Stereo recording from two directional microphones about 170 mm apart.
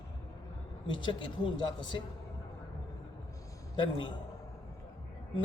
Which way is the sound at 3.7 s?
30° left (ahead or behind).